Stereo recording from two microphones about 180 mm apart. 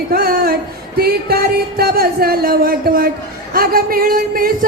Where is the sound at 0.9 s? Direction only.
55° right (ahead or behind).